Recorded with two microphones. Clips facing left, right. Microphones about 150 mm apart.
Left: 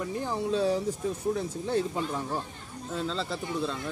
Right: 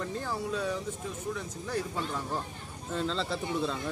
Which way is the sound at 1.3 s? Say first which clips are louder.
Left 5 dB; 25° left (ahead or behind).